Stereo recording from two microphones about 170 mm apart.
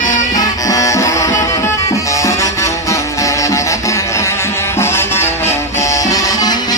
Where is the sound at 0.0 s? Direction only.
50° left (ahead or behind).